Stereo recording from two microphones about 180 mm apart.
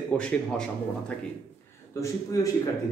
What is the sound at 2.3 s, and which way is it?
Speech, 20° left (ahead or behind).